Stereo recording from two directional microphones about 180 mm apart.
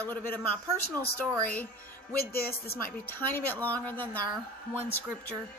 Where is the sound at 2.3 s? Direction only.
60° left (ahead or behind).